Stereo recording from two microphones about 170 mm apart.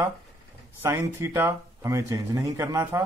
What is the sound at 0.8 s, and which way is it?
Speech, 15° right (ahead or behind).